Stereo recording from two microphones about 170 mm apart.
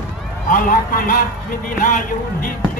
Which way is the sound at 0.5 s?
55° left (ahead or behind).